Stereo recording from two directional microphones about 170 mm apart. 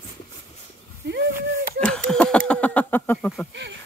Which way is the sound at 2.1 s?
5° left (ahead or behind).